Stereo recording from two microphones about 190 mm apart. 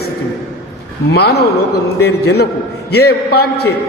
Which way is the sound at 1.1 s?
60° left (ahead or behind).